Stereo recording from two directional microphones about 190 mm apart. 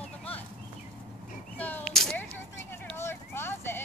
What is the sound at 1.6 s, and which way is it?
Speech, 10° left (ahead or behind).